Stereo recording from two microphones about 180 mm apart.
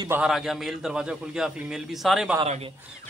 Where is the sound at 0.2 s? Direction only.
Centre (ahead or behind).